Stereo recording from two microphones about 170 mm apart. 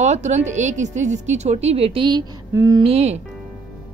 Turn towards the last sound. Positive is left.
turn(degrees=-40)  # may be behind; listen again after turning